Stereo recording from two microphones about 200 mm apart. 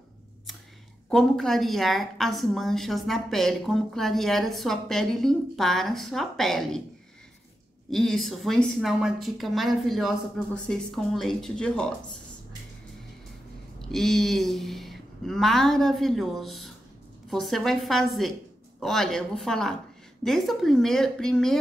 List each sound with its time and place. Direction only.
1.1 s a woman's voice: centre (ahead or behind)
7.9 s a woman's voice: centre (ahead or behind)
13.7 s a woman's voice: centre (ahead or behind)